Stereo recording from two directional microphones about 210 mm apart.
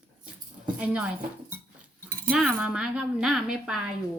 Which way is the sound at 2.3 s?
5° right (ahead or behind).